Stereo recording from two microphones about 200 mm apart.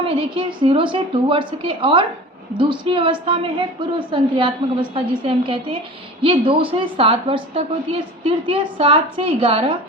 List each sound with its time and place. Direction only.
0.1 s a woman's voice: 25° right (ahead or behind)